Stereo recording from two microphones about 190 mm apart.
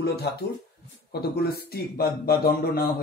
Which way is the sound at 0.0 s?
60° left (ahead or behind).